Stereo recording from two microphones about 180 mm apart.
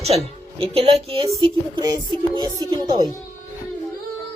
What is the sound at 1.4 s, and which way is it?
Speech, 20° right (ahead or behind).